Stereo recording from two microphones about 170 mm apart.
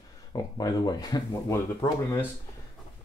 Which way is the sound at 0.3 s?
20° left (ahead or behind).